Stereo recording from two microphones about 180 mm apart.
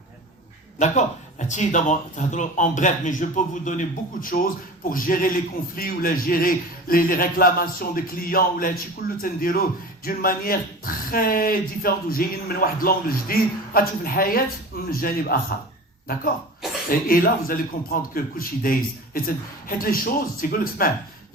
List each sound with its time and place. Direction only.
0.8 s a man's voice: 40° left (ahead or behind)
16.9 s speech: 50° left (ahead or behind)